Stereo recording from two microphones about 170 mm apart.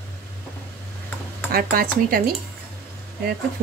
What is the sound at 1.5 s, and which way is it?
Speech, 60° right (ahead or behind).